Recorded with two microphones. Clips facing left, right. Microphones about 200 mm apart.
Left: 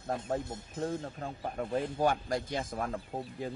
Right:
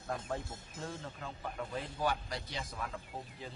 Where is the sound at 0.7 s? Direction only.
40° left (ahead or behind).